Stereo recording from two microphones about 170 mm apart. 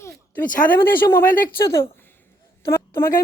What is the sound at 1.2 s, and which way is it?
Speech, 55° left (ahead or behind).